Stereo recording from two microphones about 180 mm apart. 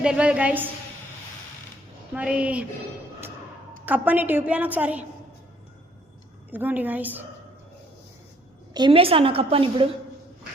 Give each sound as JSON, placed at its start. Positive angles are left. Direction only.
{"t": 0.0, "sound": "a woman's voice", "side_deg": -5}
{"t": 2.1, "sound": "a woman's voice", "side_deg": -5}
{"t": 3.8, "sound": "a woman's voice", "side_deg": -10}
{"t": 6.5, "sound": "a woman's voice", "side_deg": -10}
{"t": 8.7, "sound": "a woman's voice", "side_deg": -25}